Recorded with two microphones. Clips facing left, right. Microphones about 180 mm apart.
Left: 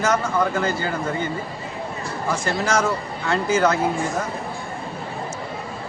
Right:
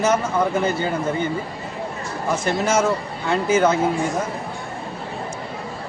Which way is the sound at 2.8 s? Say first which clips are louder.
Right 2 dB; 20° right (ahead or behind).